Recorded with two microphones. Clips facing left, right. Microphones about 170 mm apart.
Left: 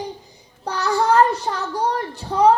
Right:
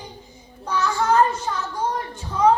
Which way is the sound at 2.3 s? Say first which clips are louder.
Left 3 dB; 65° left (ahead or behind).